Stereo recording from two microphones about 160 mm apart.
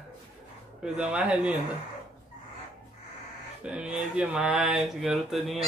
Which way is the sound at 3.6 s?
5° right (ahead or behind).